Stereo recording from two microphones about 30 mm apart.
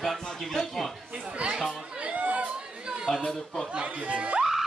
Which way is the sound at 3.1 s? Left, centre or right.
Left.